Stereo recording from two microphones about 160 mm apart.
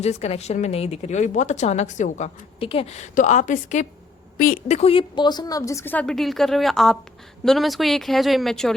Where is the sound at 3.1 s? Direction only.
50° left (ahead or behind).